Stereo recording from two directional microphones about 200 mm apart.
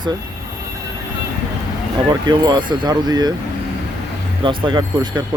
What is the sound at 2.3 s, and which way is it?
Speech, 20° right (ahead or behind).